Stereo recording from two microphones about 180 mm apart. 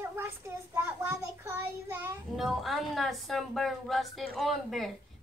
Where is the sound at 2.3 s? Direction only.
Centre (ahead or behind).